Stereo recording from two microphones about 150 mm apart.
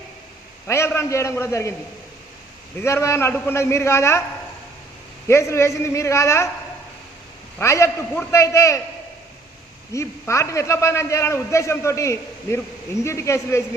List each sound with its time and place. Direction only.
0.7 s a man's voice: 20° left (ahead or behind)
2.8 s a man's voice: 20° left (ahead or behind)
5.3 s a man's voice: 20° left (ahead or behind)
7.6 s a man's voice: 20° left (ahead or behind)
9.9 s a man's voice: 20° left (ahead or behind)